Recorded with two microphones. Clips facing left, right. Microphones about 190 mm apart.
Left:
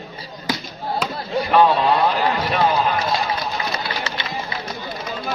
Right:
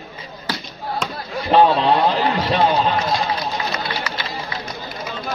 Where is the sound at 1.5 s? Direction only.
25° right (ahead or behind).